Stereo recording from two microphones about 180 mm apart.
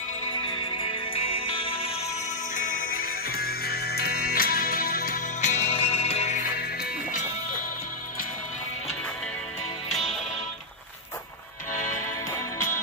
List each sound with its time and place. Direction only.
0.5 s music: 30° left (ahead or behind)
2.5 s music: 50° left (ahead or behind)
6.5 s music: 55° left (ahead or behind)
11.7 s music: 45° left (ahead or behind)
12.0 s music: 15° left (ahead or behind)